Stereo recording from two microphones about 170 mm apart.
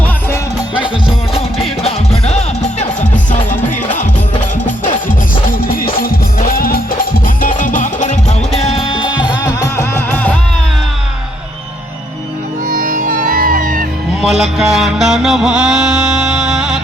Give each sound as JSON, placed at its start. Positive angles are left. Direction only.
{"t": 1.8, "sound": "music", "side_deg": 40}
{"t": 5.0, "sound": "music", "side_deg": 55}
{"t": 12.7, "sound": "music", "side_deg": -50}
{"t": 14.2, "sound": "music", "side_deg": 0}